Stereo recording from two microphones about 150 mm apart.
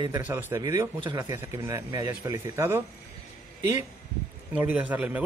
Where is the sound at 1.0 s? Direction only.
30° right (ahead or behind).